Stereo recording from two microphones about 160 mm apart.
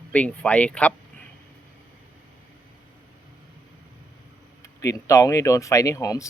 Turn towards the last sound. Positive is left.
turn(degrees=20)  # may be behind; listen again after turning